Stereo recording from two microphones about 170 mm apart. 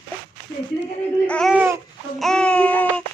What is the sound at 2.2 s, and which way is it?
Babbling, 5° left (ahead or behind).